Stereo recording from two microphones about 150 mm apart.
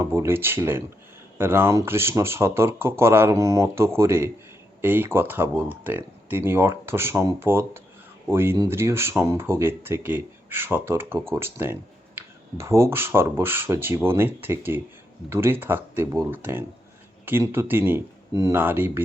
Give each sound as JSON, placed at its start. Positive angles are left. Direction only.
{"t": 0.0, "sound": "speech", "side_deg": -15}